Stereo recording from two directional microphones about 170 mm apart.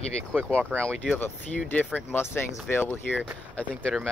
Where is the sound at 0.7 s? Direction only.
5° left (ahead or behind).